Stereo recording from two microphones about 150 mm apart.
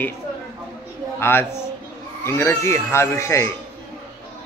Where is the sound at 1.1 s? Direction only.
15° left (ahead or behind).